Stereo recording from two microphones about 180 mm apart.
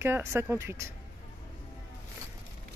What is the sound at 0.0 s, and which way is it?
Speech, 15° right (ahead or behind).